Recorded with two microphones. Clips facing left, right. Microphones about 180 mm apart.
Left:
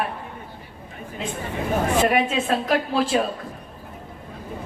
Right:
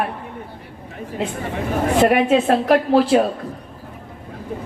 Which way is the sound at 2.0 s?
60° right (ahead or behind).